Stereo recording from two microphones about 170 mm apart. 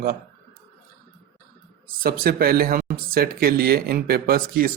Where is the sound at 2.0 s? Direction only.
60° right (ahead or behind).